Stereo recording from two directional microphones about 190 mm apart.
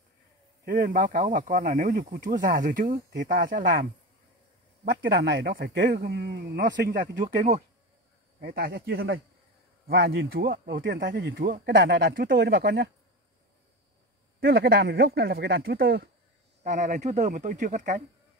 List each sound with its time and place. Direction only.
0.7 s speech: 50° right (ahead or behind)
5.0 s speech: 60° right (ahead or behind); by 7.6 s 40° right (ahead or behind)
8.4 s speech: 55° right (ahead or behind)
10.9 s speech: 70° right (ahead or behind)
11.3 s speech: 45° right (ahead or behind)
14.4 s speech: 55° right (ahead or behind)
16.6 s speech: 40° right (ahead or behind)